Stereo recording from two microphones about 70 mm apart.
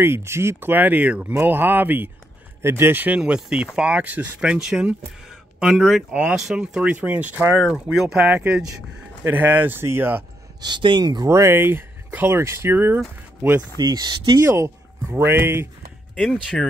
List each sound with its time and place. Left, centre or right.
0.0 s speech: right
3.2 s speech: centre
6.1 s speech: centre
6.9 s speech: right
7.7 s speech: centre; by 10.2 s right
10.6 s speech: right
11.2 s speech: right
12.4 s speech: right
13.6 s speech: right
14.4 s speech: right
16.2 s speech: centre